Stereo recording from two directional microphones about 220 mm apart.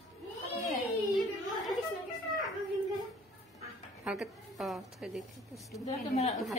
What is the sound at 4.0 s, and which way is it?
A woman's voice, 5° right (ahead or behind).